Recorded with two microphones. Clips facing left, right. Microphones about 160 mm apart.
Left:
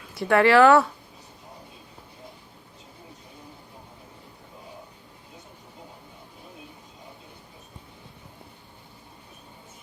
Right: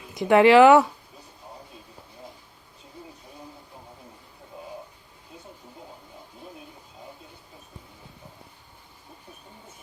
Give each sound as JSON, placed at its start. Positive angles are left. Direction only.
{"t": 0.1, "sound": "speech", "side_deg": -20}